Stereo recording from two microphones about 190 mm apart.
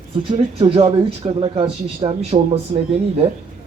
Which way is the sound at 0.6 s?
30° right (ahead or behind).